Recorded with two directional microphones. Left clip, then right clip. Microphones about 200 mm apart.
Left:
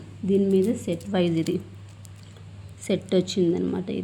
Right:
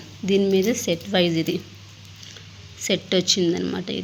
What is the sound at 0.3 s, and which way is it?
Speech, 20° right (ahead or behind).